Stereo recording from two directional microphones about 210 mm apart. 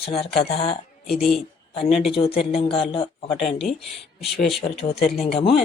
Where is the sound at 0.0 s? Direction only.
30° left (ahead or behind).